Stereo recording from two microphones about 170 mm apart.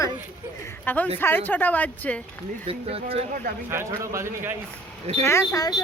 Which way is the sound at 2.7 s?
35° right (ahead or behind).